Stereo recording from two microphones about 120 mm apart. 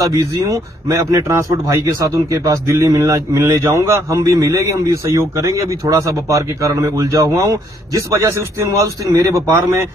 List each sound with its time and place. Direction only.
0.0 s a man's voice: 30° right (ahead or behind)